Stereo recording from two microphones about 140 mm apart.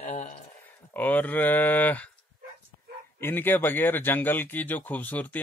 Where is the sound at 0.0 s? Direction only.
60° left (ahead or behind).